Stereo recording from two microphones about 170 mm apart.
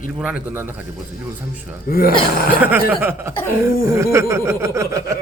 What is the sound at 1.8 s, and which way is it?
Speech, 65° left (ahead or behind).